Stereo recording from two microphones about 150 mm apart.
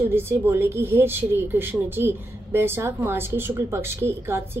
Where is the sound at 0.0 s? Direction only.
15° right (ahead or behind).